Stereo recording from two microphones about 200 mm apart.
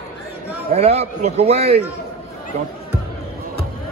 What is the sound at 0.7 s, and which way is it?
A man's voice, 30° right (ahead or behind).